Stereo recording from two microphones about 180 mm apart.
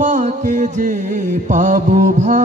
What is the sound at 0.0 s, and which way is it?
Mantra, 45° right (ahead or behind).